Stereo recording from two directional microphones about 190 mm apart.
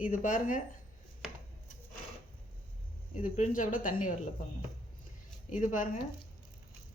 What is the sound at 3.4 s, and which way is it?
Speech, 45° left (ahead or behind).